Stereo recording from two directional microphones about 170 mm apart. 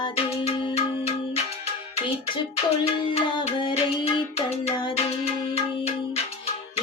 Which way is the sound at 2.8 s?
35° left (ahead or behind).